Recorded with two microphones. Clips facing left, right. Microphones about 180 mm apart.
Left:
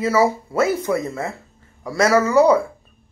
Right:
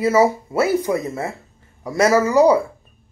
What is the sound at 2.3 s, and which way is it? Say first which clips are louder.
Speech: even; 40° right (ahead or behind).